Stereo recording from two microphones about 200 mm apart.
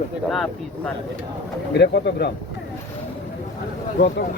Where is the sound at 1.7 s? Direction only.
55° left (ahead or behind).